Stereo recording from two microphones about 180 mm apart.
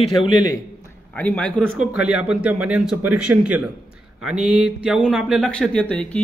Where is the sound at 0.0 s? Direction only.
25° left (ahead or behind).